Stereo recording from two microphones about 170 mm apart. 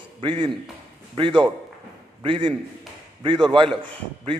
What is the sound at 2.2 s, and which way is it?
Speech, 30° right (ahead or behind).